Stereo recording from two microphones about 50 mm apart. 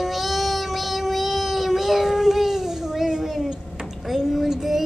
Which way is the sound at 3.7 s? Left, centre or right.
Centre.